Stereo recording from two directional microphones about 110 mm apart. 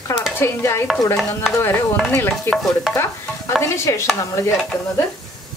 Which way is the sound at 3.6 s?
25° left (ahead or behind).